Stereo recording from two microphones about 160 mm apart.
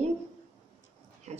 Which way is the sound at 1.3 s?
45° right (ahead or behind).